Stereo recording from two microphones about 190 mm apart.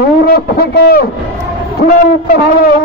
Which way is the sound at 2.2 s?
50° left (ahead or behind).